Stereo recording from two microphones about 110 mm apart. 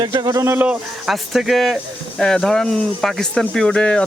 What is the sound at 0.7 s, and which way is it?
Speech, centre (ahead or behind).